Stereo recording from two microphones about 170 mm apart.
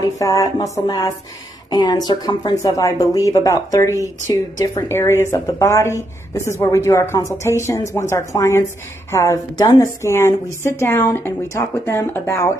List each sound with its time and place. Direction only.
0.0 s a woman's voice: 20° left (ahead or behind)